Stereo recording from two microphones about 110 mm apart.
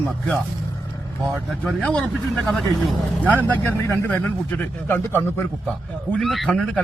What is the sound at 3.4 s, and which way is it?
A man's voice, 15° left (ahead or behind).